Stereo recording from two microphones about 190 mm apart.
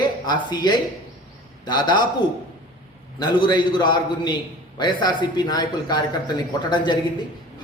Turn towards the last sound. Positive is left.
turn(degrees=25)  # may be behind; listen again after turning